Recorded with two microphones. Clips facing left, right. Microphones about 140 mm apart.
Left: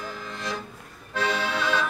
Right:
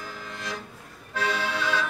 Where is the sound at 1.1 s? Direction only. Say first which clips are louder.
Left 1 dB; 30° left (ahead or behind).